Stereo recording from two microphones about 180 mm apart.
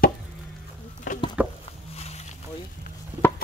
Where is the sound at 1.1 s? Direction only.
45° left (ahead or behind).